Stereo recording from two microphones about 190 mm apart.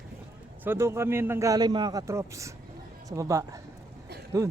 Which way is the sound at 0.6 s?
10° right (ahead or behind).